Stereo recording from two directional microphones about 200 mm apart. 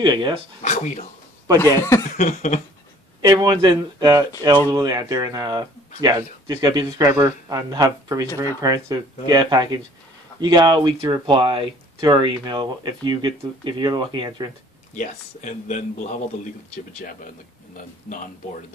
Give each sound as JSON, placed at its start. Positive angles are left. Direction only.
{"t": 0.0, "sound": "speech", "side_deg": -20}
{"t": 0.6, "sound": "speech", "side_deg": 35}
{"t": 1.6, "sound": "speech", "side_deg": 15}
{"t": 2.1, "sound": "speech", "side_deg": 35}
{"t": 3.2, "sound": "speech", "side_deg": -20}
{"t": 15.0, "sound": "speech", "side_deg": 40}